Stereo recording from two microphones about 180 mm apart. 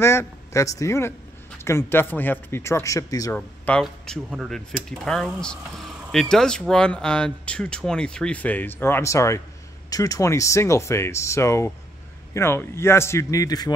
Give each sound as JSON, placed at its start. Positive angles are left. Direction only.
{"t": 0.0, "sound": "a man's voice", "side_deg": 15}
{"t": 3.3, "sound": "speech", "side_deg": 10}